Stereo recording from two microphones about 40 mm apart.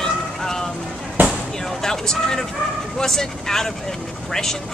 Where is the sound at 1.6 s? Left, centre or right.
Centre.